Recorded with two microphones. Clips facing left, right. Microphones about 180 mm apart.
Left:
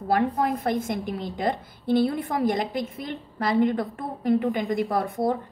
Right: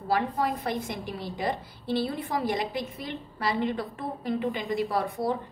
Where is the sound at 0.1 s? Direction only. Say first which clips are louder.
Left 4 dB; 50° left (ahead or behind).